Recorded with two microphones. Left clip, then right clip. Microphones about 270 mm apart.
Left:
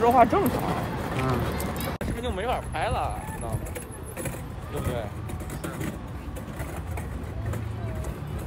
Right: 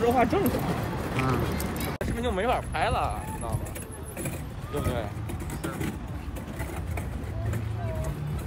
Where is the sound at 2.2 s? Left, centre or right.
Right.